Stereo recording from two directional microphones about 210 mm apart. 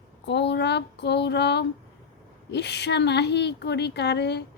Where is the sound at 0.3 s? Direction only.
55° left (ahead or behind).